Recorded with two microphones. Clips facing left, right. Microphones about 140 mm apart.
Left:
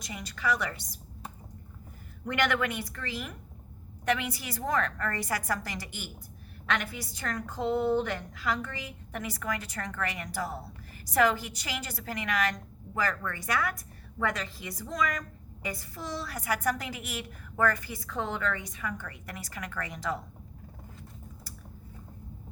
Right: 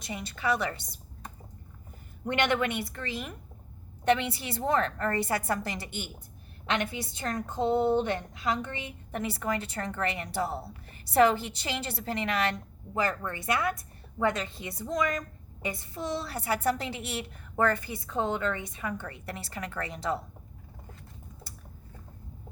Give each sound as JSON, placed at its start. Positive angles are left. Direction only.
{"t": 0.0, "sound": "a woman's voice", "side_deg": -25}
{"t": 2.2, "sound": "a woman's voice", "side_deg": -25}